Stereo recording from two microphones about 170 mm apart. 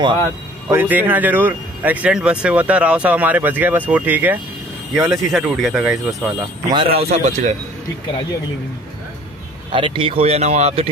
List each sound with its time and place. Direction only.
0.7 s speech: 10° right (ahead or behind)
6.7 s speech: 30° right (ahead or behind)
9.7 s speech: 30° right (ahead or behind)